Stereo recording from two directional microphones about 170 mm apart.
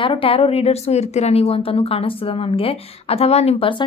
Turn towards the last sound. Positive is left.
turn(degrees=30)  # may be behind; listen again after turning